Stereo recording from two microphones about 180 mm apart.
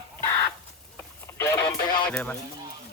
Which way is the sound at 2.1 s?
5° left (ahead or behind).